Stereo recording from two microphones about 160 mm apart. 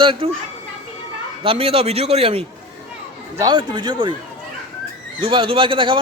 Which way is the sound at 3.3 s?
25° right (ahead or behind).